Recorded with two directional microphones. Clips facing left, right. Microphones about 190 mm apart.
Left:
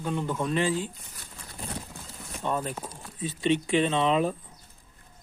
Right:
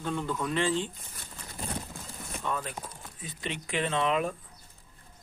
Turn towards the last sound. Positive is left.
turn(degrees=25)  # may be behind; listen again after turning